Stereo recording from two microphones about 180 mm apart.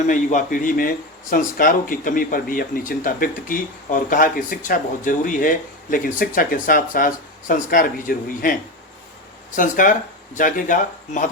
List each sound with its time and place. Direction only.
0.1 s speech: 45° left (ahead or behind)
9.6 s speech: 50° left (ahead or behind)